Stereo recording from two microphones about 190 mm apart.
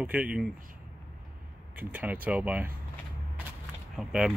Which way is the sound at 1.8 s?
10° right (ahead or behind).